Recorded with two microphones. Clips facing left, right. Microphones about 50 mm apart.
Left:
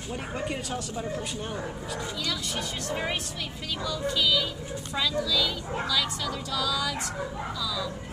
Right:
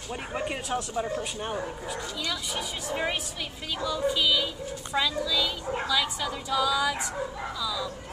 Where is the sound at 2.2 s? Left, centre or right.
Centre.